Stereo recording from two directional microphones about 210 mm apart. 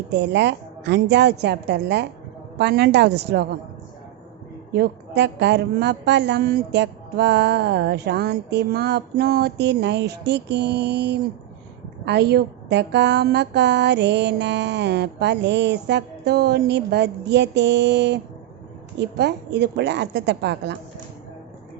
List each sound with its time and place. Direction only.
0.1 s a woman's voice: 55° right (ahead or behind)
4.7 s a woman's voice: 50° right (ahead or behind)